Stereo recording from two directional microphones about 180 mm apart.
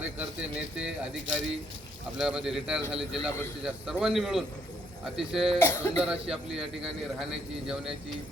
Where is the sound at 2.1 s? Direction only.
5° right (ahead or behind).